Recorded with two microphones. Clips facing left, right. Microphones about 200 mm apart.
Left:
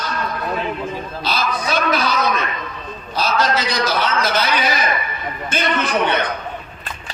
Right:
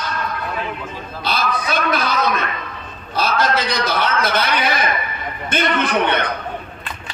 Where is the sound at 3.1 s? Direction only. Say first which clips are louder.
Even; 55° right (ahead or behind).